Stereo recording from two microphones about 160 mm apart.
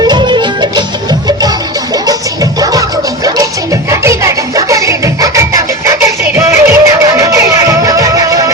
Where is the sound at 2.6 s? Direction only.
20° right (ahead or behind).